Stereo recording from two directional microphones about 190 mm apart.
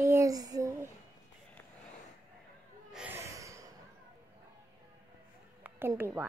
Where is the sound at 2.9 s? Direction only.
10° right (ahead or behind).